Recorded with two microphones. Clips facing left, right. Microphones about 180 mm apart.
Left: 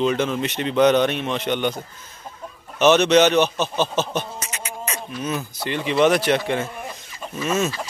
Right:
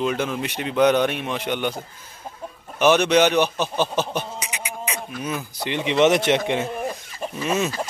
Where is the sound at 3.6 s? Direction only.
15° right (ahead or behind).